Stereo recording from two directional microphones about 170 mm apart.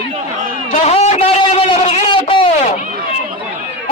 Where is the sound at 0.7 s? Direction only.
40° left (ahead or behind).